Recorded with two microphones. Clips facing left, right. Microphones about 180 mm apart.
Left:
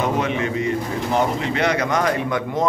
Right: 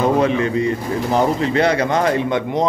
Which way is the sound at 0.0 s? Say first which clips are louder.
Right 5 dB; 35° right (ahead or behind).